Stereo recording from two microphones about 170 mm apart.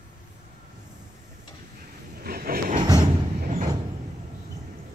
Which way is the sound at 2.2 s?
60° right (ahead or behind).